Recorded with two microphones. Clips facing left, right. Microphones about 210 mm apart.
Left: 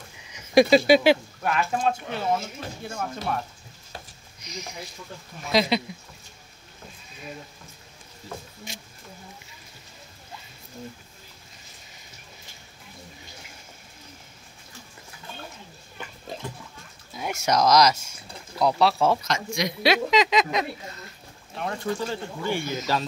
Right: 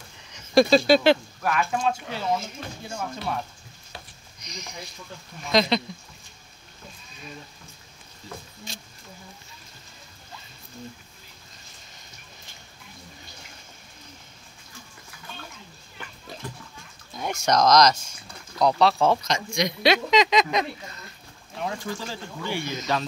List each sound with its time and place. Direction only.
0.3 s speech: 10° left (ahead or behind)
1.4 s speech: 30° left (ahead or behind)
1.8 s speech: 55° left (ahead or behind)
4.4 s speech: 5° left (ahead or behind)
17.1 s speech: 5° left (ahead or behind)
21.5 s speech: 55° left (ahead or behind)